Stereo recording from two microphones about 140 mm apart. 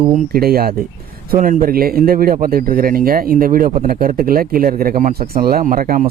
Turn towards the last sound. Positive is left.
turn(degrees=-85)